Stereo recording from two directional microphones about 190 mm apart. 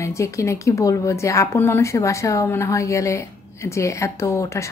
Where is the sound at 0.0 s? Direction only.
15° left (ahead or behind).